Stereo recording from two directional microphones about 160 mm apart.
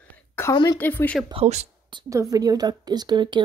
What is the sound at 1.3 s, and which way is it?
Speech, 45° right (ahead or behind).